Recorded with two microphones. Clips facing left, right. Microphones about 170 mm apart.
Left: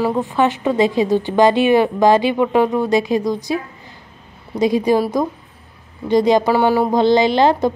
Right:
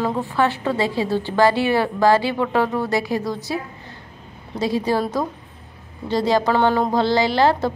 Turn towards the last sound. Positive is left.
turn(degrees=20)  # may be behind; listen again after turning